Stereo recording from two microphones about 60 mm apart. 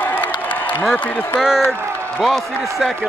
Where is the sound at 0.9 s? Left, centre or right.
Left.